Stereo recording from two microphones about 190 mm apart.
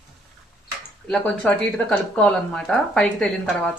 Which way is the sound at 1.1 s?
5° left (ahead or behind).